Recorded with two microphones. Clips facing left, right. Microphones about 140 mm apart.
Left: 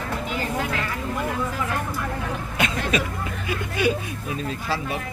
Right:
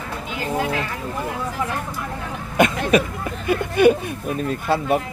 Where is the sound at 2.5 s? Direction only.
50° right (ahead or behind).